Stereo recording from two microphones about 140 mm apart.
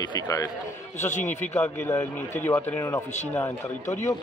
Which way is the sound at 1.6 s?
20° left (ahead or behind).